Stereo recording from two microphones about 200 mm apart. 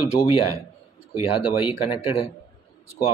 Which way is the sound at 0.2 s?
50° left (ahead or behind).